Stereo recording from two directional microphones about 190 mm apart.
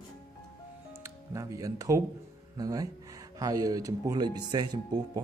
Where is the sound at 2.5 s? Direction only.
20° right (ahead or behind).